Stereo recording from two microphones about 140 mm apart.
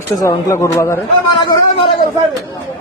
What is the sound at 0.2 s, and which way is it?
Speech, 25° left (ahead or behind).